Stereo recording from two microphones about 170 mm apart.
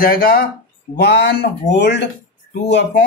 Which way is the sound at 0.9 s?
70° left (ahead or behind).